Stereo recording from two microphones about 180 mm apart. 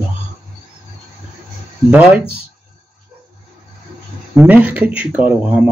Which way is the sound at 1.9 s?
5° right (ahead or behind).